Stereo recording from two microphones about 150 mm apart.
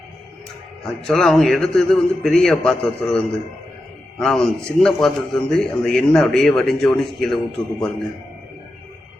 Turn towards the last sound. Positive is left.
turn(degrees=0)  # may be behind; listen again after turning